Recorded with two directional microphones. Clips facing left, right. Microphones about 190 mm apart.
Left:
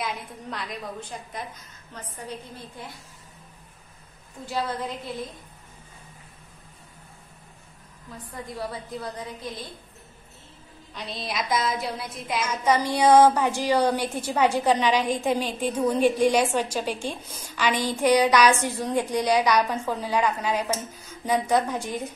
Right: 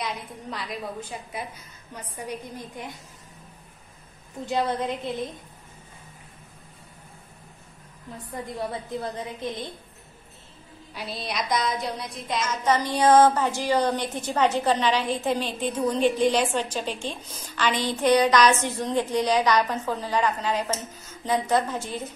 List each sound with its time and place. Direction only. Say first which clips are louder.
0.0 s a woman's voice: even; centre (ahead or behind); by 2.9 s 15° right (ahead or behind)
4.5 s a woman's voice: right 4 dB; 20° right (ahead or behind)
8.5 s a woman's voice: right 2 dB; 20° right (ahead or behind)
11.0 s a woman's voice: even; centre (ahead or behind); by 22.1 s 15° left (ahead or behind)